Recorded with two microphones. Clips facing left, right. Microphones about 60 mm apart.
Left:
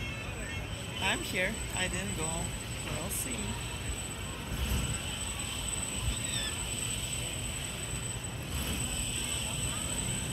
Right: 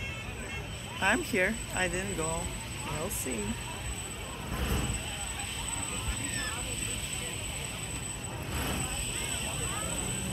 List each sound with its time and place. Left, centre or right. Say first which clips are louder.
1.0 s speech: right 5 dB; right